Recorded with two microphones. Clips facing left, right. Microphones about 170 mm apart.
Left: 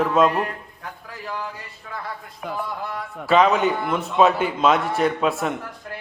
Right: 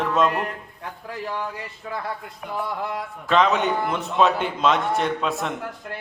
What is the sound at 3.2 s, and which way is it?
A man's voice, 5° left (ahead or behind).